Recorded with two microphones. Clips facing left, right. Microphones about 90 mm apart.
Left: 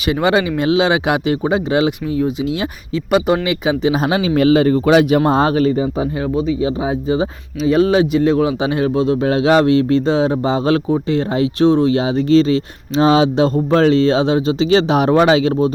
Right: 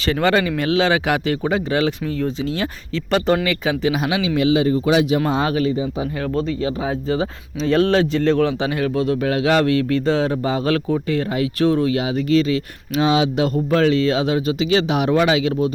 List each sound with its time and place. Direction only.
0.0 s speech: 15° left (ahead or behind)
3.9 s speech: 40° left (ahead or behind)
4.4 s speech: 50° left (ahead or behind)
5.2 s speech: 35° left (ahead or behind)
6.3 s speech: 15° left (ahead or behind); by 15.7 s 35° left (ahead or behind)